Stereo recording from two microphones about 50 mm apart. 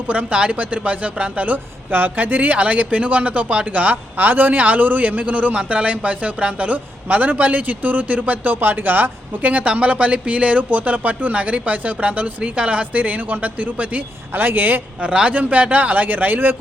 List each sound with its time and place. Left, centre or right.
0.1 s speech: right
1.9 s speech: right
15.0 s speech: right